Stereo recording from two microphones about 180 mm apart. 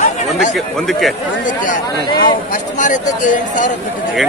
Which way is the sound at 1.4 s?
45° left (ahead or behind).